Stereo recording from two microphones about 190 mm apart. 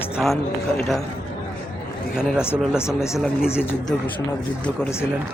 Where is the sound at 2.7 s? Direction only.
15° left (ahead or behind).